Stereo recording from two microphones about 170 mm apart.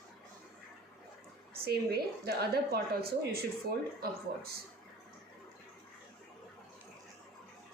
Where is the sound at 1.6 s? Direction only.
65° right (ahead or behind).